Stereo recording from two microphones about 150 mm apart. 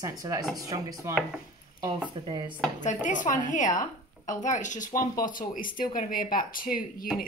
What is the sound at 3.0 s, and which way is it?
A man's voice, 60° left (ahead or behind).